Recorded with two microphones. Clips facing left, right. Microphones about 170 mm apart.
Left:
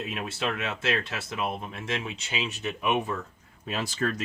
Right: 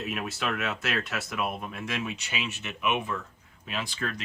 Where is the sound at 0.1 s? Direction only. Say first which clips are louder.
Even; 30° left (ahead or behind).